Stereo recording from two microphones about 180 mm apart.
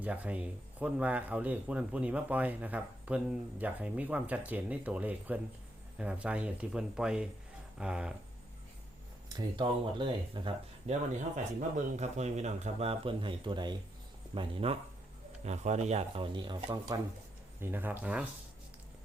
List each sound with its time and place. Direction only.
0.0 s speech: 10° right (ahead or behind)
9.6 s speech: 25° right (ahead or behind)
11.9 s speech: 40° right (ahead or behind); by 17.0 s 25° right (ahead or behind)
17.6 s speech: 10° right (ahead or behind)